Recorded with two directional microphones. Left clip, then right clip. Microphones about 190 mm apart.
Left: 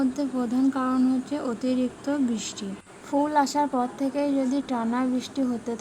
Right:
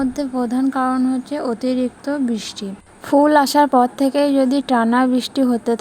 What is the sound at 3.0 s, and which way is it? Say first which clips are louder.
A woman's voice: right 10 dB; 45° right (ahead or behind).